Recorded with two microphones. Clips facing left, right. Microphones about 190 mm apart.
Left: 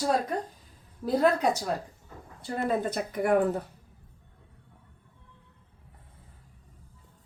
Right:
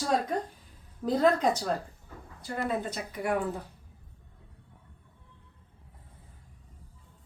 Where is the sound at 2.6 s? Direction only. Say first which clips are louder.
Left 5 dB; 50° left (ahead or behind).